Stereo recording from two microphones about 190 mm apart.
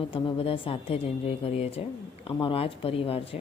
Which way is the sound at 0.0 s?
30° left (ahead or behind).